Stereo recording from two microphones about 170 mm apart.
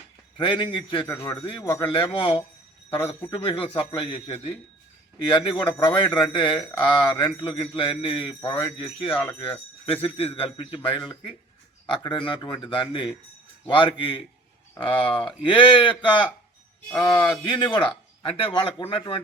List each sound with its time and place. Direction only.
0.3 s a man's voice: 30° left (ahead or behind)
1.0 s a man's voice: 15° left (ahead or behind)
1.5 s a man's voice: 30° left (ahead or behind)